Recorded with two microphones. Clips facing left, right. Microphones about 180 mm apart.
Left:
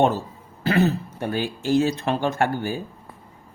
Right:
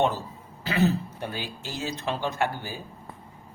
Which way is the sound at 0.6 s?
50° left (ahead or behind).